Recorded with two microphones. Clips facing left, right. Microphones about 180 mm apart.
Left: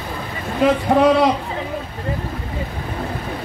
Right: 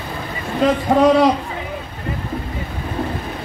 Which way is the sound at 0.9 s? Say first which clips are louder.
Right 1 dB; 5° left (ahead or behind).